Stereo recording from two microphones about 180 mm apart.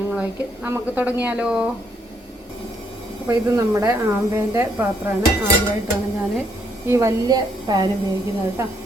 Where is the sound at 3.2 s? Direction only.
15° right (ahead or behind).